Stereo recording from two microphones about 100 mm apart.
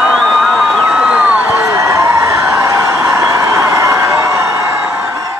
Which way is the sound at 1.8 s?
30° right (ahead or behind).